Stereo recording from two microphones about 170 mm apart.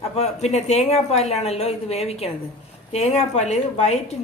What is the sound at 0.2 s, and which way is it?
A woman's voice, 40° left (ahead or behind).